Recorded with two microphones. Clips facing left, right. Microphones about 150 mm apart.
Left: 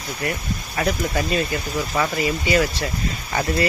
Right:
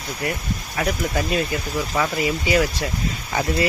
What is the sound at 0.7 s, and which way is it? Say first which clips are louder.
Speech: left 1 dB; 5° right (ahead or behind).